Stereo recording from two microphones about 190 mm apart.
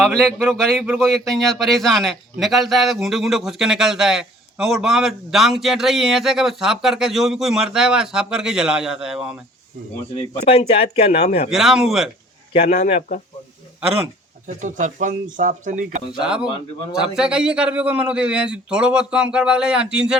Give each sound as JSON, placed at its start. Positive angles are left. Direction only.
{"t": 0.0, "sound": "a man's voice", "side_deg": 5}
{"t": 10.2, "sound": "speech", "side_deg": 30}
{"t": 11.5, "sound": "a man's voice", "side_deg": 0}
{"t": 12.5, "sound": "speech", "side_deg": 35}
{"t": 14.4, "sound": "speech", "side_deg": -40}
{"t": 16.1, "sound": "a man's voice", "side_deg": -5}